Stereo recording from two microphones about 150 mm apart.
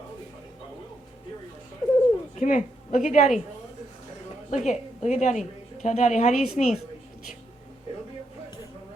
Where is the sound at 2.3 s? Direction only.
55° left (ahead or behind).